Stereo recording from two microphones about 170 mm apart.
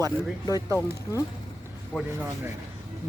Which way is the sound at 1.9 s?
10° left (ahead or behind).